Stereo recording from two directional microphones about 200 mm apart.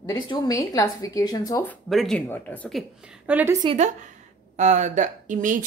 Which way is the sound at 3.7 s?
35° right (ahead or behind).